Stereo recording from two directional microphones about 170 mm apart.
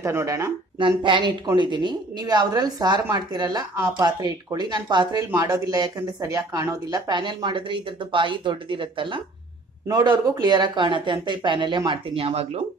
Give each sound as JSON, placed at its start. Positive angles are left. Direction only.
{"t": 0.0, "sound": "a woman's voice", "side_deg": -15}
{"t": 0.7, "sound": "a woman's voice", "side_deg": -30}